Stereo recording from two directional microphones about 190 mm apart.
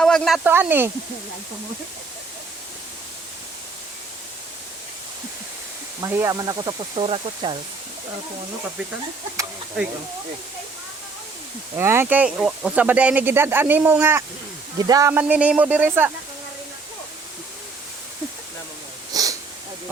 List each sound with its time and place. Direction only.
0.0 s speech: centre (ahead or behind)
6.0 s speech: 15° right (ahead or behind)
11.8 s speech: 15° right (ahead or behind)
19.1 s a sound: 20° right (ahead or behind)